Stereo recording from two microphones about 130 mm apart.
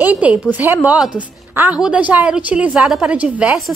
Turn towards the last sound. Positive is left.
turn(degrees=-5)  # may be behind; listen again after turning